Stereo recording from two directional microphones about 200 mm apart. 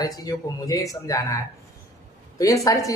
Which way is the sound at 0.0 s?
20° left (ahead or behind).